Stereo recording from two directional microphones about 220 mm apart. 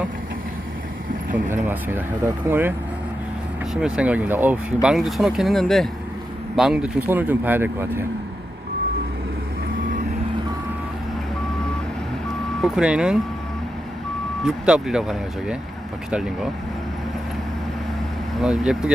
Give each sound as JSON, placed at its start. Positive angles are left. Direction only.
{"t": 1.5, "sound": "speech", "side_deg": -10}
{"t": 3.8, "sound": "speech", "side_deg": -5}
{"t": 12.6, "sound": "speech", "side_deg": -5}
{"t": 14.4, "sound": "speech", "side_deg": -5}
{"t": 18.3, "sound": "speech", "side_deg": 0}